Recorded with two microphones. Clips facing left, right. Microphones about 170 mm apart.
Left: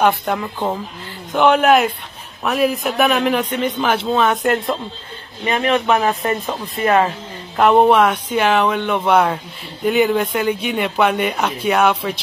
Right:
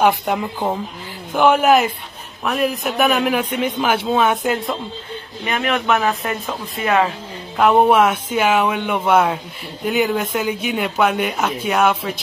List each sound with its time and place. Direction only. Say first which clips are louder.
0.0 s a man's voice: even; 10° right (ahead or behind)
5.5 s speech: left 3 dB; 30° left (ahead or behind)
7.5 s a man's voice: left 1 dB; centre (ahead or behind)